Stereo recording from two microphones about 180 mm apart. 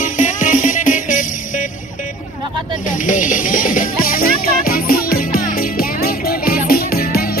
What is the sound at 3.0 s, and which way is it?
Music, 45° left (ahead or behind).